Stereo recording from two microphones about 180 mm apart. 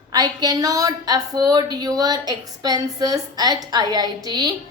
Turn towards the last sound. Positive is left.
turn(degrees=-20)  # may be behind; listen again after turning